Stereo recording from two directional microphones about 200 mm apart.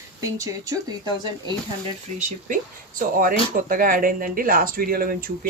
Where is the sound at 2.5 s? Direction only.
45° right (ahead or behind).